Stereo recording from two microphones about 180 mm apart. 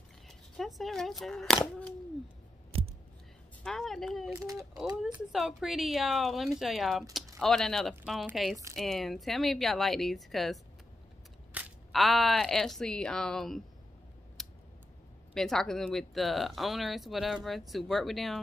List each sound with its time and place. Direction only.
0.3 s speech: centre (ahead or behind)
3.6 s speech: centre (ahead or behind)
4.4 s speech: 20° right (ahead or behind)
5.0 s speech: centre (ahead or behind)
14.4 s scissors: centre (ahead or behind)
15.3 s speech: centre (ahead or behind)